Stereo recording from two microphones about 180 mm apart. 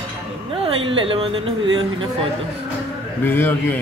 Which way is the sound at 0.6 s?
30° right (ahead or behind).